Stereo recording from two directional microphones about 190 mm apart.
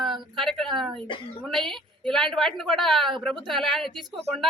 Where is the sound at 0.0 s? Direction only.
Centre (ahead or behind).